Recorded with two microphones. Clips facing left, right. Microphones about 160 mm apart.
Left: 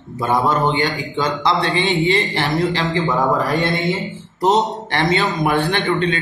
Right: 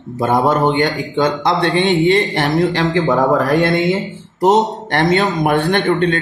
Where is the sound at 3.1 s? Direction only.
60° right (ahead or behind).